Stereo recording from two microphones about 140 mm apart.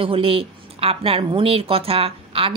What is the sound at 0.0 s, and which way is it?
A woman's voice, 40° right (ahead or behind).